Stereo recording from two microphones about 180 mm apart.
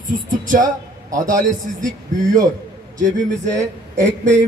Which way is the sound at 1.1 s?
45° right (ahead or behind).